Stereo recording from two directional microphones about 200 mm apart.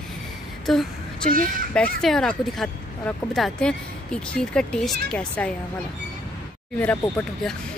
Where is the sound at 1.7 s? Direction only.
Centre (ahead or behind).